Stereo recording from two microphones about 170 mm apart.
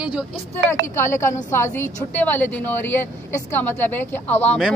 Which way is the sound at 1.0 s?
15° left (ahead or behind).